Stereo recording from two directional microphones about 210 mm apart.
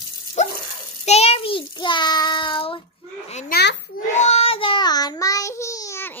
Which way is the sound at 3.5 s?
50° left (ahead or behind).